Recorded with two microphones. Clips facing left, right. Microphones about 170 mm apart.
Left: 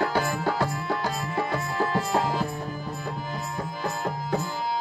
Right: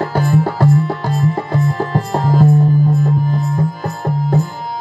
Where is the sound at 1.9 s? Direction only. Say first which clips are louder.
Right 7 dB; 40° right (ahead or behind).